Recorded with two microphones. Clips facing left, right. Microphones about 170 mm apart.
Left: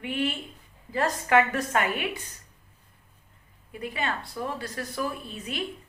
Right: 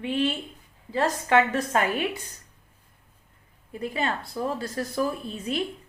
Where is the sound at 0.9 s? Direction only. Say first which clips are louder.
Right 1 dB; 25° right (ahead or behind).